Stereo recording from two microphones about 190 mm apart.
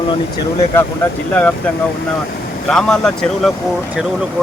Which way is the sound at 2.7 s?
Centre (ahead or behind).